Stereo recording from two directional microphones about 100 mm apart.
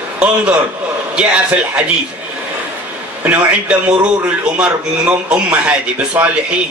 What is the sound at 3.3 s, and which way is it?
A man's voice, 15° right (ahead or behind).